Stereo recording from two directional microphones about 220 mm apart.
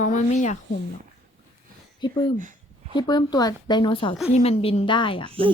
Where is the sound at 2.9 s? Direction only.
20° left (ahead or behind).